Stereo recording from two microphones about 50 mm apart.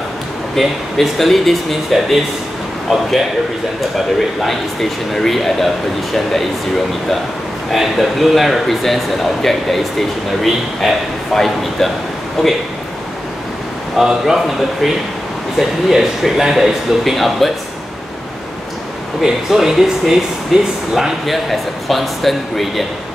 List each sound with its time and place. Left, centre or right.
0.6 s speech: centre
4.4 s speech: centre
7.7 s speech: centre
13.9 s speech: centre
19.2 s speech: centre